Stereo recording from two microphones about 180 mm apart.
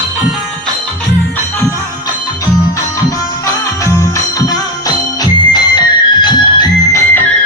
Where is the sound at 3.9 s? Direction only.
20° left (ahead or behind).